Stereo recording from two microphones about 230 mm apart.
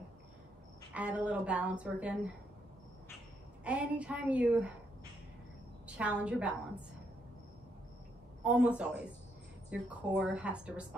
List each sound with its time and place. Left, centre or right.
0.9 s speech: centre
3.6 s speech: centre
5.9 s a woman's voice: centre
8.5 s speech: centre